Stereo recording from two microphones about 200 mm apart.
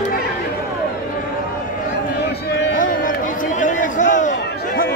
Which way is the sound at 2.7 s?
40° left (ahead or behind).